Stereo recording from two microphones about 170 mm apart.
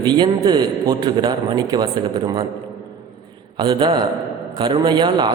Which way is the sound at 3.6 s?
25° right (ahead or behind).